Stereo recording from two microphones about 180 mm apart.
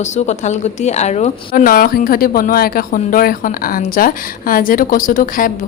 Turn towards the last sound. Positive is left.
turn(degrees=50)  # may be behind; listen again after turning